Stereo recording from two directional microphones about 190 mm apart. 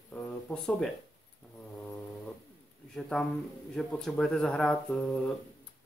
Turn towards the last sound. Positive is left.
turn(degrees=0)  # may be behind; listen again after turning